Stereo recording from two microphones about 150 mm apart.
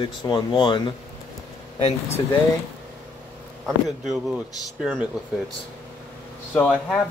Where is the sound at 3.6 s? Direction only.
Centre (ahead or behind).